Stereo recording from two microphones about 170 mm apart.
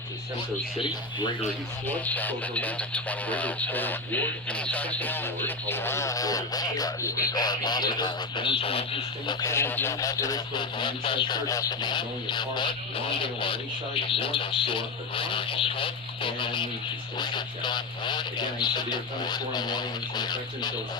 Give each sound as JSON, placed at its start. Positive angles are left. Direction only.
{"t": 0.8, "sound": "speech", "side_deg": 30}
{"t": 2.0, "sound": "speech", "side_deg": 10}
{"t": 9.5, "sound": "speech", "side_deg": 15}